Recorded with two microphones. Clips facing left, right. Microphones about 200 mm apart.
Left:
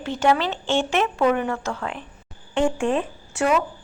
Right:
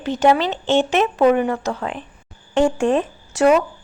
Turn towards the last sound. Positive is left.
turn(degrees=-40)  # may be behind; listen again after turning